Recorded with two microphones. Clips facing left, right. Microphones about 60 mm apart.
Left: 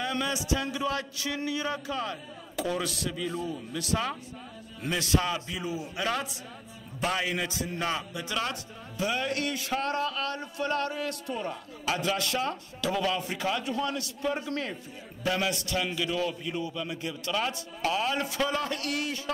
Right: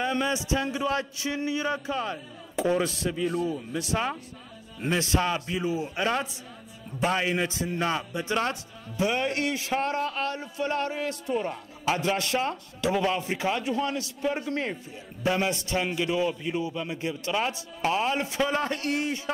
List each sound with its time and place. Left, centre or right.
0.0 s a man's voice: right
3.4 s a man's voice: right